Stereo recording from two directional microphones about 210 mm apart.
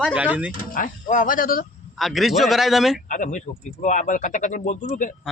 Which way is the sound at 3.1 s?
35° left (ahead or behind).